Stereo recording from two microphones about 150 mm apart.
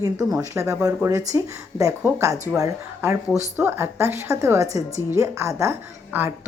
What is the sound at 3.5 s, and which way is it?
A woman's voice, 15° right (ahead or behind).